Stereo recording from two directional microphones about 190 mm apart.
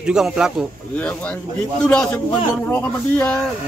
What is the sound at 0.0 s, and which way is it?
Speech, 5° right (ahead or behind).